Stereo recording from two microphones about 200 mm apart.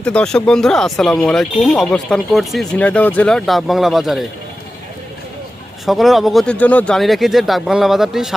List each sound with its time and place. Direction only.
0.0 s speech: 5° left (ahead or behind)
5.8 s speech: centre (ahead or behind)